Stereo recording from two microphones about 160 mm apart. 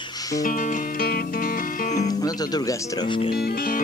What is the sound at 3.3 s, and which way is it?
Music, 75° left (ahead or behind).